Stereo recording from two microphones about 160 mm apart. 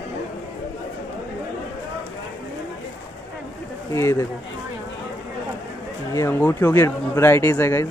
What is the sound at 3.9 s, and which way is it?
Speech, 15° left (ahead or behind).